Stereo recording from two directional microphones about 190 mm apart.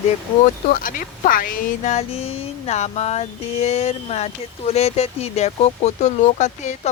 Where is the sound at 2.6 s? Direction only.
35° left (ahead or behind).